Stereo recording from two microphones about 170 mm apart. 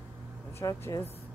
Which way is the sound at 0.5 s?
15° left (ahead or behind).